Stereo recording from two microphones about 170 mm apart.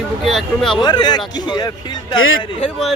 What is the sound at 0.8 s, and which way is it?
Speech, 25° left (ahead or behind).